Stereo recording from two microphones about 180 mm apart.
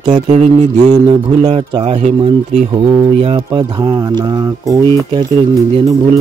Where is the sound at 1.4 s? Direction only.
30° right (ahead or behind).